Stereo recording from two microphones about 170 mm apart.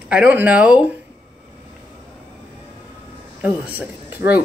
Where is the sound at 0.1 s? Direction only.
10° right (ahead or behind).